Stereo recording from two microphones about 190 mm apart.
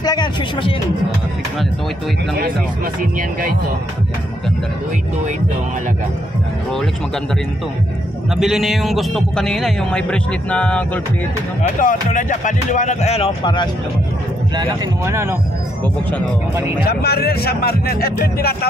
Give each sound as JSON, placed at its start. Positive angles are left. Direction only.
{"t": 0.0, "sound": "speech", "side_deg": 20}
{"t": 3.0, "sound": "speech", "side_deg": -45}
{"t": 8.4, "sound": "a man's voice", "side_deg": 0}
{"t": 11.8, "sound": "speech", "side_deg": 45}
{"t": 14.6, "sound": "speech", "side_deg": -15}
{"t": 16.8, "sound": "speech", "side_deg": 55}